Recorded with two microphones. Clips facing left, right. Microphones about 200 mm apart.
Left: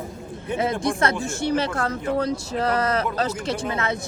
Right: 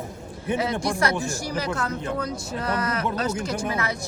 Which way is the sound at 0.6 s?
25° left (ahead or behind).